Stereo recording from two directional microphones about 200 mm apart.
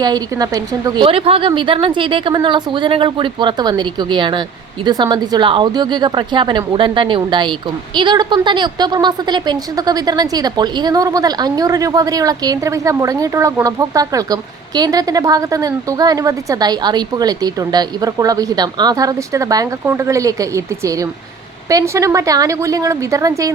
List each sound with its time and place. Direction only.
0.0 s a woman's voice: 20° right (ahead or behind)